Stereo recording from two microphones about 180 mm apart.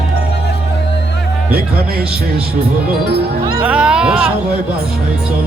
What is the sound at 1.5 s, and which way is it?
Speech, 60° right (ahead or behind).